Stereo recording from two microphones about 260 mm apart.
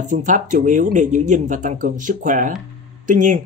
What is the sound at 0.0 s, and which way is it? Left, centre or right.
Speech, right.